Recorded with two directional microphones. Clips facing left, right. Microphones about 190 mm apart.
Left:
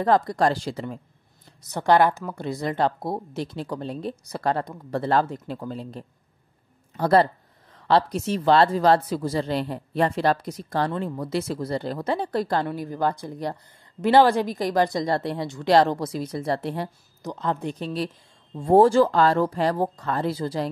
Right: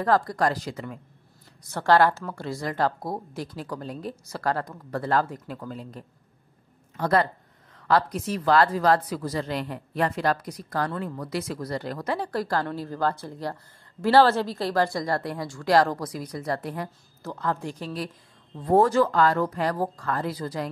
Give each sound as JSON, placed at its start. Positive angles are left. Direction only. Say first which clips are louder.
{"t": 0.0, "sound": "speech", "louder": "left 2 dB", "side_deg": 20}
{"t": 1.6, "sound": "speech", "louder": "left 1 dB", "side_deg": 15}